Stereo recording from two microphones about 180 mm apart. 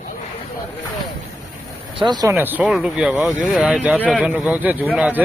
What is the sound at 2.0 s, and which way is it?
Speech, 25° right (ahead or behind).